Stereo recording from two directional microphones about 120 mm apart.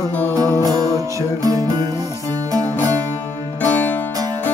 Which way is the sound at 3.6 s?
15° left (ahead or behind).